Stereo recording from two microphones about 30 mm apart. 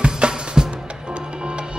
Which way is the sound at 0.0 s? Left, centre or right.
Right.